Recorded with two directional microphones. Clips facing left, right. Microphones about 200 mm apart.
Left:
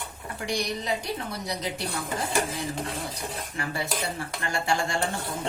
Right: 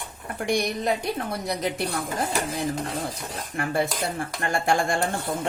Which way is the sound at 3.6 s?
55° right (ahead or behind).